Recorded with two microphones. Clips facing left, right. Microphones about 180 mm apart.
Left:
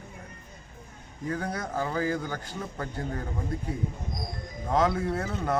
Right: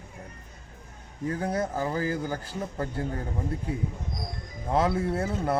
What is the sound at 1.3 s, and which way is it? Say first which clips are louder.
A man's voice: right 3 dB; 30° right (ahead or behind).